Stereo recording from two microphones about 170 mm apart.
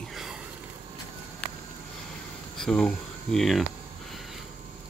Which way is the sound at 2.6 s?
5° left (ahead or behind).